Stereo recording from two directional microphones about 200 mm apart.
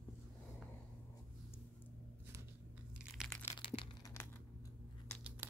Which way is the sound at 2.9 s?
Centre (ahead or behind).